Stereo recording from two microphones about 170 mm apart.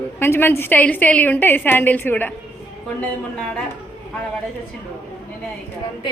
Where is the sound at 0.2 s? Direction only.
15° left (ahead or behind).